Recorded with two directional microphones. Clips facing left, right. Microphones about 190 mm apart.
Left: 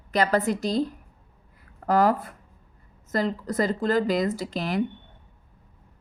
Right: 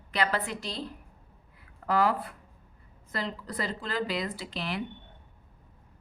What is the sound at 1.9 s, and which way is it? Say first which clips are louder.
A woman's voice: left 5 dB; 45° left (ahead or behind).